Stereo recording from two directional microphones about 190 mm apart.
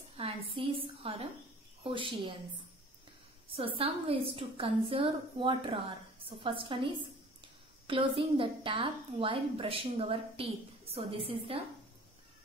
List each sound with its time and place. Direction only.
0.2 s a woman's voice: 30° right (ahead or behind)
3.5 s a woman's voice: 30° right (ahead or behind)